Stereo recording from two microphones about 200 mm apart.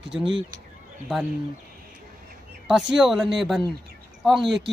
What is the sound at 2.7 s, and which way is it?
Speech, centre (ahead or behind).